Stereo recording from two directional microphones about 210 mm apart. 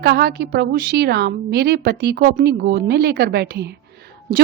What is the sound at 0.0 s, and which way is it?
A woman's voice, 50° right (ahead or behind).